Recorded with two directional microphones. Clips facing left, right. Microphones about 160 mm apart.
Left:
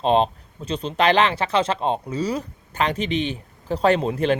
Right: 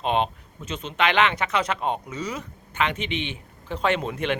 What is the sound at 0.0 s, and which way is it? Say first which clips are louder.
Speech: left 5 dB; 35° left (ahead or behind).